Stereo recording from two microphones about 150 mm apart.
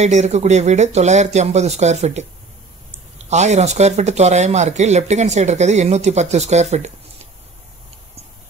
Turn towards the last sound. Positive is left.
turn(degrees=-50)  # may be behind; listen again after turning